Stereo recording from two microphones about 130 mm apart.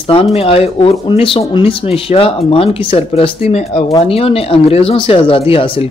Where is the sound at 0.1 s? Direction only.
50° left (ahead or behind).